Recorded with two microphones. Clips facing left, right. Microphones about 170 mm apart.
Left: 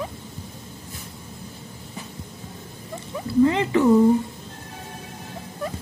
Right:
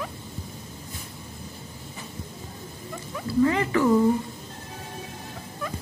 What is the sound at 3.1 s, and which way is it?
Speech, 20° left (ahead or behind).